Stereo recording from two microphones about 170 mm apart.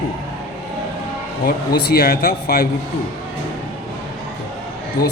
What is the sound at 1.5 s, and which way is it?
A man's voice, 70° left (ahead or behind).